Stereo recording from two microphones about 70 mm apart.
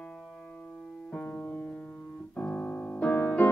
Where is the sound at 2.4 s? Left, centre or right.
Left.